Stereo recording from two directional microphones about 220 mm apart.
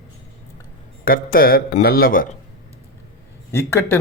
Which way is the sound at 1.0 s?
40° left (ahead or behind).